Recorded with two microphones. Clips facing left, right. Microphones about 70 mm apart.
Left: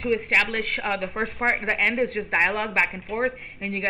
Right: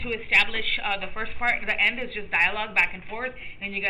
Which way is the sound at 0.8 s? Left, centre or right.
Left.